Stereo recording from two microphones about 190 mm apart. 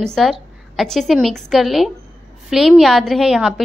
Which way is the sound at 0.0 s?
Centre (ahead or behind).